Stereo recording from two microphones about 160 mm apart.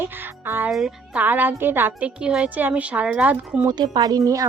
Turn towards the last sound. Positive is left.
turn(degrees=-20)  # may be behind; listen again after turning